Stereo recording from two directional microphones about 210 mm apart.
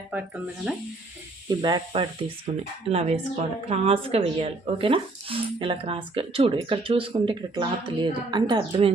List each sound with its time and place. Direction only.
0.1 s speech: 5° right (ahead or behind)
1.5 s speech: 20° right (ahead or behind)